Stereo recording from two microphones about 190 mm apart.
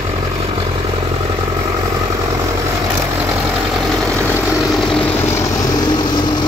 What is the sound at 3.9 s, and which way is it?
Vehicle, 5° left (ahead or behind).